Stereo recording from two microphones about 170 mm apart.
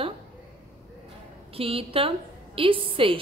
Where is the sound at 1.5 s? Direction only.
35° right (ahead or behind).